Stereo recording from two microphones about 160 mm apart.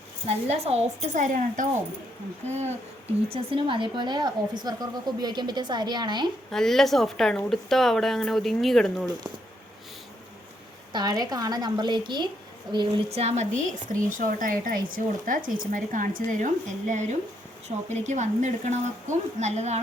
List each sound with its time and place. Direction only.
0.3 s a woman's voice: 40° right (ahead or behind)
3.3 s a woman's voice: 30° right (ahead or behind)
6.5 s speech: 5° left (ahead or behind)
10.9 s a woman's voice: 25° right (ahead or behind)
13.1 s a woman's voice: 40° right (ahead or behind)